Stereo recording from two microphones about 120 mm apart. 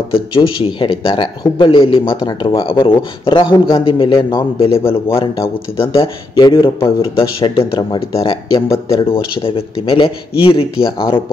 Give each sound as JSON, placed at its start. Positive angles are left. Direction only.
{"t": 0.7, "sound": "speech", "side_deg": 45}